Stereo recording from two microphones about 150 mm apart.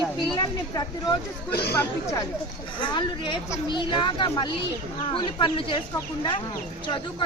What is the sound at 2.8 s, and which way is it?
Speech, 30° left (ahead or behind).